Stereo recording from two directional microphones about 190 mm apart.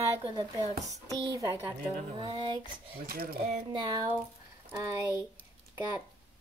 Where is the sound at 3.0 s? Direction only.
50° right (ahead or behind).